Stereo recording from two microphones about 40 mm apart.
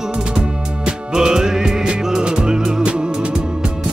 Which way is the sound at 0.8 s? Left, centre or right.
Centre.